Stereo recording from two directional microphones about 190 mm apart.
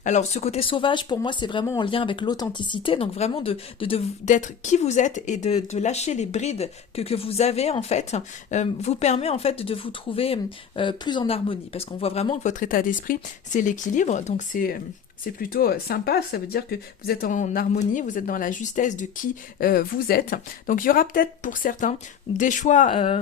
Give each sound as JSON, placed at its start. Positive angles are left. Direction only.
{"t": 0.0, "sound": "speech", "side_deg": 40}
{"t": 4.3, "sound": "speech", "side_deg": 40}